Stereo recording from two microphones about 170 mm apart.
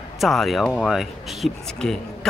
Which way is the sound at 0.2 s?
Centre (ahead or behind).